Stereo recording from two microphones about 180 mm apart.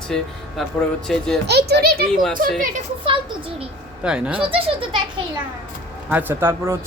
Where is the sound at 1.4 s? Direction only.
65° right (ahead or behind).